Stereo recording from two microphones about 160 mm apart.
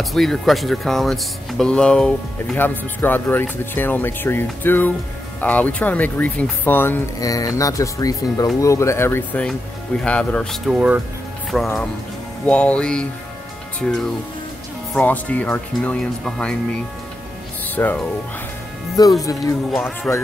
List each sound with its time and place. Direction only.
0.0 s speech: centre (ahead or behind)
17.6 s speech: 10° left (ahead or behind)
19.0 s speech: 25° left (ahead or behind)
19.8 s speech: 15° left (ahead or behind)